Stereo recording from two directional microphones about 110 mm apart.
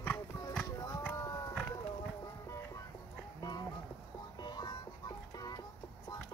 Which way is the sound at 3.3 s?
35° left (ahead or behind).